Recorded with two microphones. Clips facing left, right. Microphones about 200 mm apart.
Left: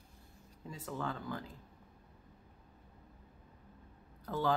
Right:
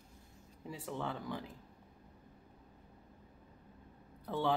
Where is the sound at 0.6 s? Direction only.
15° right (ahead or behind).